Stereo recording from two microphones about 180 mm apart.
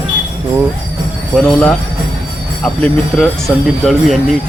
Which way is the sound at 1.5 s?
5° left (ahead or behind).